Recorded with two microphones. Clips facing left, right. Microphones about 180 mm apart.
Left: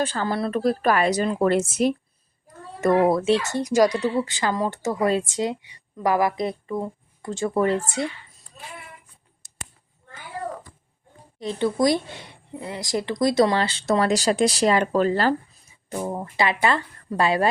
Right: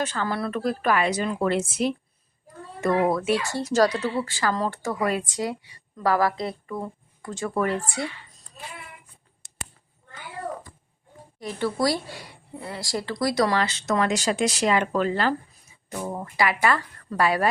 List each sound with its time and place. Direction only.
0.0 s a woman's voice: 30° left (ahead or behind)
3.0 s speech: 30° left (ahead or behind)
11.3 s speech: 20° left (ahead or behind)
15.9 s speech: 25° left (ahead or behind)